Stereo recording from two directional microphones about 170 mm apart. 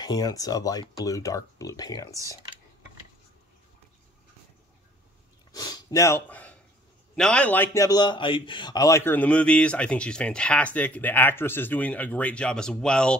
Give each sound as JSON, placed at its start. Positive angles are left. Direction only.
{"t": 0.0, "sound": "speech", "side_deg": 20}
{"t": 5.5, "sound": "a sound", "side_deg": 20}
{"t": 7.2, "sound": "a man's voice", "side_deg": 5}